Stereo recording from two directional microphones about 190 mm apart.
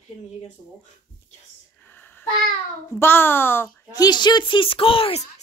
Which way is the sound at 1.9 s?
10° left (ahead or behind).